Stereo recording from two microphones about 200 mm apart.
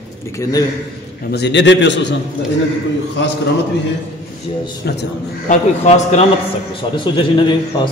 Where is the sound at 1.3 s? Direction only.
60° left (ahead or behind).